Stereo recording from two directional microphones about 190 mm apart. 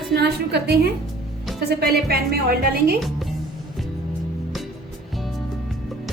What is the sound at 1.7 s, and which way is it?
A woman's voice, 55° right (ahead or behind).